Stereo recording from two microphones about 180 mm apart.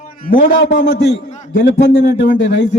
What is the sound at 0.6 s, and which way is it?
Speech, 75° left (ahead or behind).